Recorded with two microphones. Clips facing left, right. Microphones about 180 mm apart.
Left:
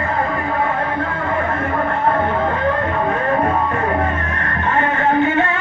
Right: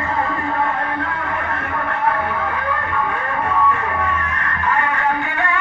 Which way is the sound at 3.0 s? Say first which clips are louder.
Left 5 dB; 40° left (ahead or behind).